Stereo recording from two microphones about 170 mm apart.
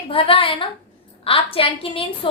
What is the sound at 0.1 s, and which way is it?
A woman's voice, 30° left (ahead or behind).